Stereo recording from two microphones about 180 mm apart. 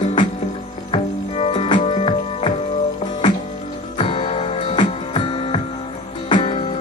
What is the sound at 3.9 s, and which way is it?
Music, 30° left (ahead or behind).